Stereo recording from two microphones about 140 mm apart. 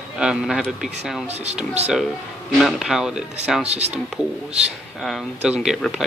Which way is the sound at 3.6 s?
50° right (ahead or behind).